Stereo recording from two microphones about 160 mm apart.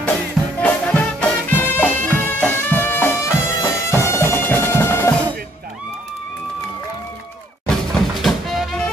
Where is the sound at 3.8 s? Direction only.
15° left (ahead or behind).